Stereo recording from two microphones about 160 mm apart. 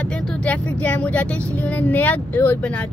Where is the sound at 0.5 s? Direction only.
10° left (ahead or behind).